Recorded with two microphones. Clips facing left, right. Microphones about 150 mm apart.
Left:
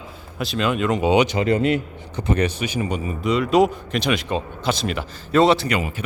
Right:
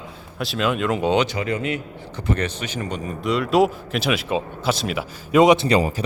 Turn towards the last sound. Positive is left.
turn(degrees=-35)  # may be behind; listen again after turning